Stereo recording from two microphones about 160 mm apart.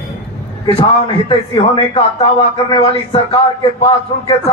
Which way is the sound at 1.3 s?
35° left (ahead or behind).